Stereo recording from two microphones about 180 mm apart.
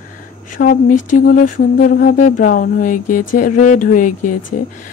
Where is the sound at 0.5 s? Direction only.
45° left (ahead or behind).